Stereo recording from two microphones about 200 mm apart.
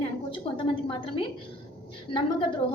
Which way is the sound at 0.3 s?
25° left (ahead or behind).